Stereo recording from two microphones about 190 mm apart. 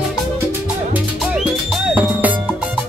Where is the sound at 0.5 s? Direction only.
5° right (ahead or behind).